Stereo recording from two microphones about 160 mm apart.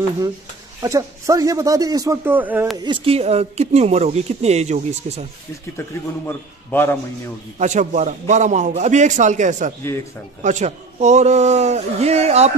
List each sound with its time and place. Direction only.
0.8 s a man's voice: 20° right (ahead or behind)
2.8 s speech: 35° right (ahead or behind)
5.8 s a man's voice: 15° left (ahead or behind)
7.5 s a man's voice: 50° right (ahead or behind)